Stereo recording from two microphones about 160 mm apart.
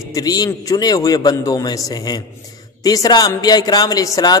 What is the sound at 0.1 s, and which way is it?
Speech, 25° left (ahead or behind).